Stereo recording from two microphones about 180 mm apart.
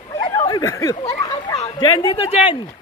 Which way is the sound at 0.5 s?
20° left (ahead or behind).